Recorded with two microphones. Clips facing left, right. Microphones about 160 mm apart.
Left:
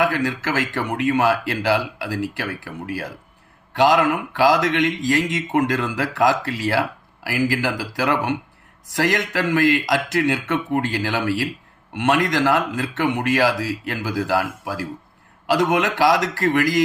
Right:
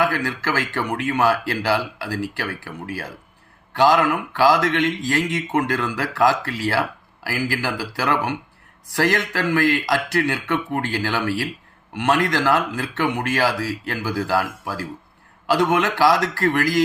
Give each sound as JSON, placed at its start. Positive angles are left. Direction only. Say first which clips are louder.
{"t": 0.0, "sound": "speech", "louder": "left 1 dB", "side_deg": 20}